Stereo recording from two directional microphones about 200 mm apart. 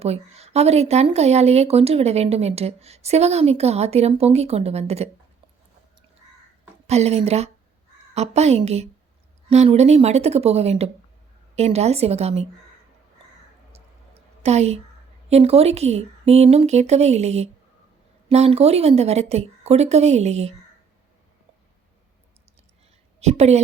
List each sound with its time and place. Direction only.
0.0 s speech: 30° right (ahead or behind)
6.8 s speech: 35° right (ahead or behind)
13.7 s a sound: 30° right (ahead or behind)
15.3 s speech: 30° right (ahead or behind)
23.2 s speech: 35° right (ahead or behind)